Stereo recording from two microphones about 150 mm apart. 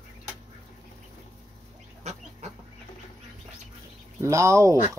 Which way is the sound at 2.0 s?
50° right (ahead or behind).